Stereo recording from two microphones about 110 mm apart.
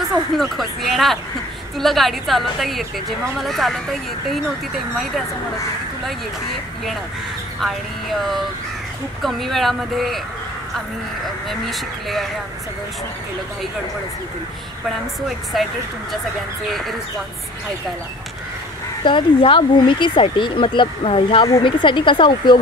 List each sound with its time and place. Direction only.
0.0 s a woman's voice: centre (ahead or behind)
7.6 s a woman's voice: centre (ahead or behind)
11.7 s a woman's voice: centre (ahead or behind)
15.5 s a woman's voice: centre (ahead or behind)
19.0 s speech: 50° left (ahead or behind)
21.6 s speech: 45° left (ahead or behind)